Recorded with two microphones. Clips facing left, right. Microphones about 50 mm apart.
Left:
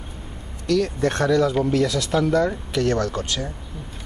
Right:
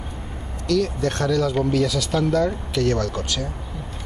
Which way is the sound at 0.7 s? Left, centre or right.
Left.